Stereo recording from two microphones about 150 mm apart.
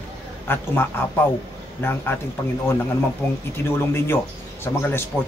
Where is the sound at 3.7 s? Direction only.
15° left (ahead or behind).